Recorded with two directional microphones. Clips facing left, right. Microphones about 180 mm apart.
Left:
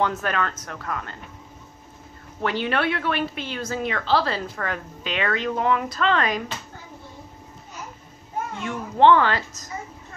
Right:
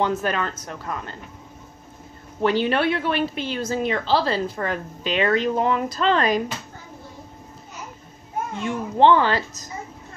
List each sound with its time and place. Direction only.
0.0 s speech: 25° right (ahead or behind)
2.4 s a woman's voice: 30° right (ahead or behind)
8.6 s speech: 30° right (ahead or behind)